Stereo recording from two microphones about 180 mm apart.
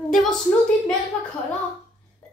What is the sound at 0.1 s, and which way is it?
Speech, 5° left (ahead or behind).